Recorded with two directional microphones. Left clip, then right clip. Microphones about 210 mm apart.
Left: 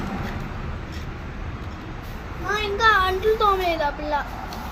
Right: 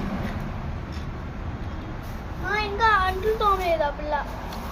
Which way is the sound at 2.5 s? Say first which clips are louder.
Left 2 dB; 55° left (ahead or behind).